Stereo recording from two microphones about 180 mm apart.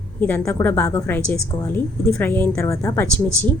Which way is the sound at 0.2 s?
15° left (ahead or behind).